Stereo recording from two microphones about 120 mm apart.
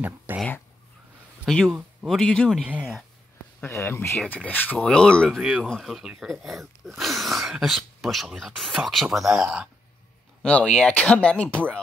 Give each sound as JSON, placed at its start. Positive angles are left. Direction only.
{"t": 0.3, "sound": "speech", "side_deg": -15}
{"t": 1.4, "sound": "speech", "side_deg": 0}
{"t": 2.6, "sound": "speech", "side_deg": -10}
{"t": 3.6, "sound": "speech", "side_deg": 20}
{"t": 10.4, "sound": "speech", "side_deg": 10}